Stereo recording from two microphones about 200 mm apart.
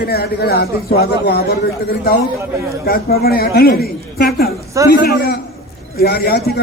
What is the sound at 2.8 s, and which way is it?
A man's voice, 50° left (ahead or behind).